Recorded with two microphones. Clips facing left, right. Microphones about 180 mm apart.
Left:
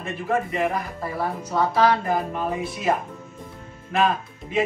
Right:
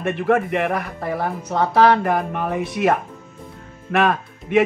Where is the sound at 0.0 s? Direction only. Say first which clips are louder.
Right 6 dB; 70° right (ahead or behind).